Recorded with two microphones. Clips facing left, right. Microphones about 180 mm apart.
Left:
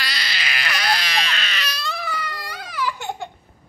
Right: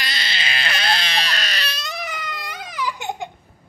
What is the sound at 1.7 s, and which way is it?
Baby cry, 20° right (ahead or behind).